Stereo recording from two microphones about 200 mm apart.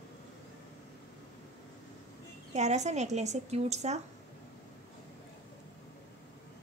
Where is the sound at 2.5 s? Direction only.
35° right (ahead or behind).